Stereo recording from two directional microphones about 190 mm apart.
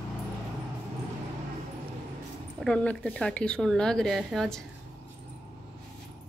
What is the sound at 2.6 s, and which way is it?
A woman's voice, 5° left (ahead or behind).